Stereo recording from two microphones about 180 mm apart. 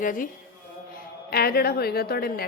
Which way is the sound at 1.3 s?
60° left (ahead or behind).